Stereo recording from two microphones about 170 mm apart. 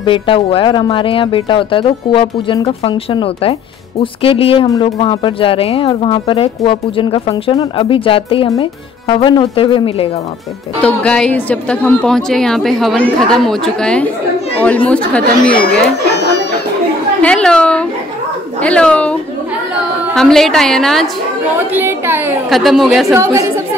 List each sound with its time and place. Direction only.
0.0 s speech: 30° left (ahead or behind)
10.8 s a woman's voice: 5° left (ahead or behind)
15.5 s speech: 70° left (ahead or behind); by 16.4 s 85° left
17.2 s a woman's voice: 5° left (ahead or behind)
20.2 s a woman's voice: centre (ahead or behind)
21.5 s a woman's voice: 15° right (ahead or behind)
22.5 s a woman's voice: centre (ahead or behind)
23.1 s a woman's voice: 15° right (ahead or behind)